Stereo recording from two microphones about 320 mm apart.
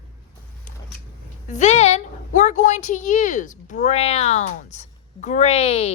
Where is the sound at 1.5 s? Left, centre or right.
Left.